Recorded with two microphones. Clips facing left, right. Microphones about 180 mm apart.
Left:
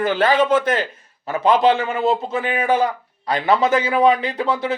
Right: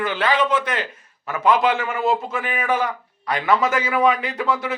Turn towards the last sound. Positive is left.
turn(degrees=30)  # may be behind; listen again after turning